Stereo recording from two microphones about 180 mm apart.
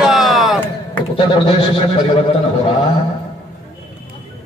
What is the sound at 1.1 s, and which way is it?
A man's voice, 25° left (ahead or behind).